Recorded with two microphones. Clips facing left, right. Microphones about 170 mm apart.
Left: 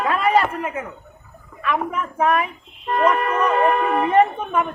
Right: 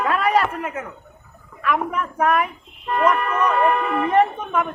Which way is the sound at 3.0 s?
30° left (ahead or behind).